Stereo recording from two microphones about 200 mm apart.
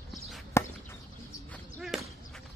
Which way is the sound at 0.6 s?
15° left (ahead or behind).